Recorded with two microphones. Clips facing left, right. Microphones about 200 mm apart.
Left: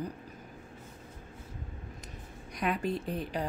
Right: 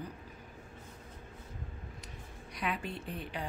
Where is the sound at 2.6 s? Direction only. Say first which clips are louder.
Left 6 dB; 40° left (ahead or behind).